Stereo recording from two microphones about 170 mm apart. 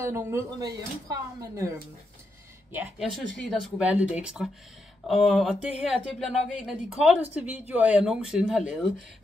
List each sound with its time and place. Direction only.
0.0 s speech: 15° right (ahead or behind)
2.7 s speech: 10° right (ahead or behind)
3.3 s speech: 5° left (ahead or behind)